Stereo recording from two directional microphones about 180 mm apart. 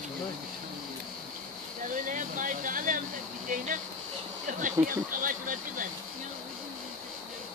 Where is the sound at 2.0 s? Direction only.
45° right (ahead or behind).